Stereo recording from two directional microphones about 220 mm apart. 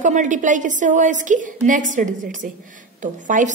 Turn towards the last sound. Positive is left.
turn(degrees=-35)  # may be behind; listen again after turning